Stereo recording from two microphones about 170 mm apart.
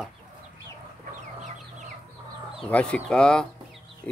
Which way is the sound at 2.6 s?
5° left (ahead or behind).